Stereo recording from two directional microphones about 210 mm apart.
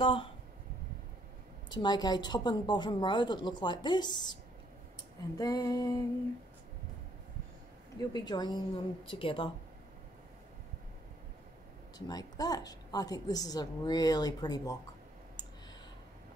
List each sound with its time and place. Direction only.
0.0 s speech: 25° left (ahead or behind)
1.7 s a woman's voice: 20° left (ahead or behind)
5.4 s a woman's voice: 15° left (ahead or behind)
8.1 s a woman's voice: 20° left (ahead or behind)
12.1 s a woman's voice: 20° left (ahead or behind)